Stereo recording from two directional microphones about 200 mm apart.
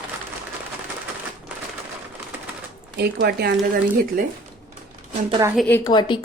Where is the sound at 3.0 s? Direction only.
55° right (ahead or behind).